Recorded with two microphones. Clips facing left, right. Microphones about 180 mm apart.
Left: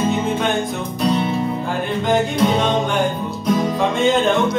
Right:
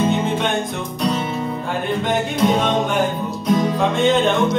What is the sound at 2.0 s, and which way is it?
Music, centre (ahead or behind).